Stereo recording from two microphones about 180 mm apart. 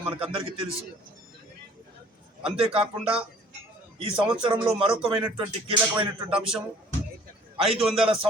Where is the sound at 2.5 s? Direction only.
30° right (ahead or behind).